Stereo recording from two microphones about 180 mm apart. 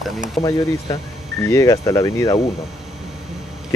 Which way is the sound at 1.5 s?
15° left (ahead or behind).